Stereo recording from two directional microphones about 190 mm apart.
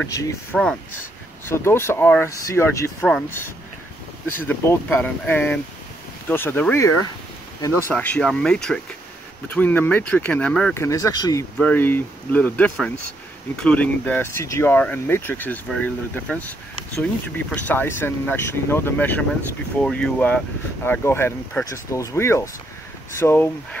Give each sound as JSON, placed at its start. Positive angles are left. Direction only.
{"t": 0.0, "sound": "speech", "side_deg": 15}
{"t": 4.5, "sound": "speech", "side_deg": 10}
{"t": 11.5, "sound": "speech", "side_deg": 10}